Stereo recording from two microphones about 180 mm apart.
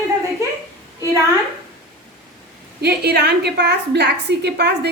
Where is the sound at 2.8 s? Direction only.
65° right (ahead or behind).